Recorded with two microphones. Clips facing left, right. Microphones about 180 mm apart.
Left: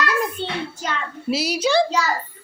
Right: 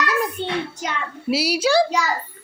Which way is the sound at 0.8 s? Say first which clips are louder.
Even; 10° right (ahead or behind).